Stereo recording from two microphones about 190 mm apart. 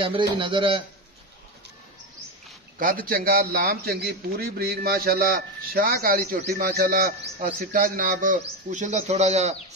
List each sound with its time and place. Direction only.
0.0 s speech: 25° right (ahead or behind)
2.8 s a man's voice: 50° right (ahead or behind)